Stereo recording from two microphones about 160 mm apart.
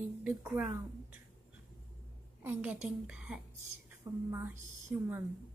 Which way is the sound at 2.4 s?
10° right (ahead or behind).